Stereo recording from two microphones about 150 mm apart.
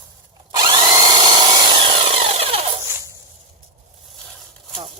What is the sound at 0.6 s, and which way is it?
Drill, 35° right (ahead or behind).